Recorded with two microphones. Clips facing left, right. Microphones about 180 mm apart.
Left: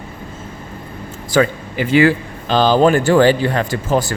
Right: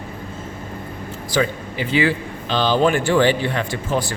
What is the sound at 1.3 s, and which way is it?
Speech, 50° left (ahead or behind).